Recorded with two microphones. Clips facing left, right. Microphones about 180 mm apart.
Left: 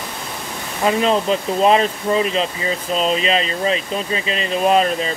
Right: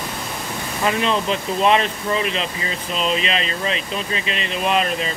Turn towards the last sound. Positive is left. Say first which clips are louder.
# left 5 dB
turn(degrees=35)  # may be behind; listen again after turning